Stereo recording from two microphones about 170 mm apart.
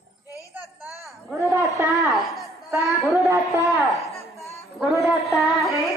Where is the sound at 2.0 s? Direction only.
Centre (ahead or behind).